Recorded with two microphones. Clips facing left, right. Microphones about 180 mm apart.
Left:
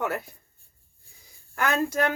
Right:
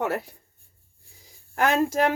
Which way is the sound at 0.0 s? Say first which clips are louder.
Right 2 dB; 35° right (ahead or behind).